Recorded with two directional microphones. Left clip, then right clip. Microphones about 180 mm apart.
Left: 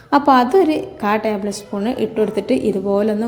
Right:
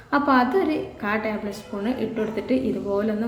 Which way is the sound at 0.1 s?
40° left (ahead or behind).